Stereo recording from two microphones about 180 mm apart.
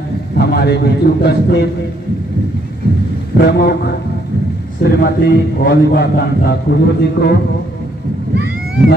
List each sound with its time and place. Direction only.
0.4 s a man's voice: 65° left (ahead or behind)
3.3 s a man's voice: 65° left (ahead or behind)